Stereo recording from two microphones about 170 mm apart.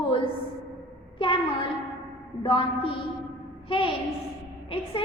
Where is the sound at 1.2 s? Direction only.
30° left (ahead or behind).